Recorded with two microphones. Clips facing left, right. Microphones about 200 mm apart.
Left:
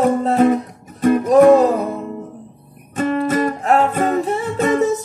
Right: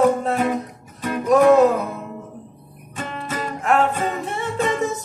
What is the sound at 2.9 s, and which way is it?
Music, 55° left (ahead or behind).